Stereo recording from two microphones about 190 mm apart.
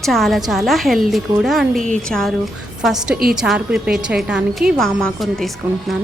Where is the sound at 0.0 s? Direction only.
Centre (ahead or behind).